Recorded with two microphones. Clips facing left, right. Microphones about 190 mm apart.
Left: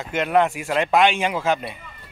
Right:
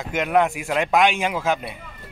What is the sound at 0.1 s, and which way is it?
A man's voice, 10° right (ahead or behind).